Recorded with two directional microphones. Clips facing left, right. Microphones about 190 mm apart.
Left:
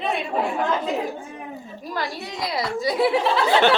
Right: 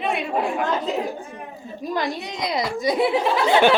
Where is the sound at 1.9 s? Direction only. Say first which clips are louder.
Right 3 dB; 20° right (ahead or behind).